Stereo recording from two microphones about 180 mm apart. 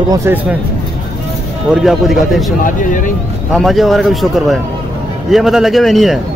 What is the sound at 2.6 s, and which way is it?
Speech, 45° left (ahead or behind).